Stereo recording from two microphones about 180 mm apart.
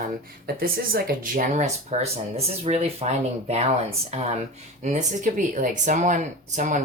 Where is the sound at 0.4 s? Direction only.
55° right (ahead or behind).